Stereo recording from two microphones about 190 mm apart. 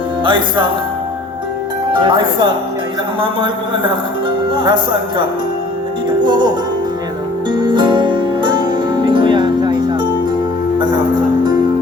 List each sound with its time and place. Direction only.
0.3 s speech: 25° right (ahead or behind)
1.9 s speech: 25° right (ahead or behind)
4.5 s speech: 25° right (ahead or behind)
7.5 s music: 25° right (ahead or behind)